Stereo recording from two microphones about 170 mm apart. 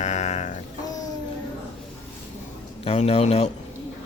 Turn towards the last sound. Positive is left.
turn(degrees=40)  # may be behind; listen again after turning